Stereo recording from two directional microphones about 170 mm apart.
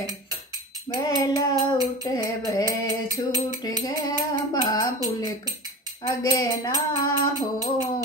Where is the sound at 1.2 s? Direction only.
20° left (ahead or behind).